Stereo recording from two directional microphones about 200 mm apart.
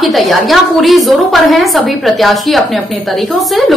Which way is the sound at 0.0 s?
Centre (ahead or behind).